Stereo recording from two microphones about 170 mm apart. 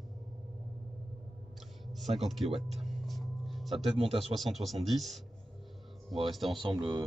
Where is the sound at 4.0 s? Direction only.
35° right (ahead or behind).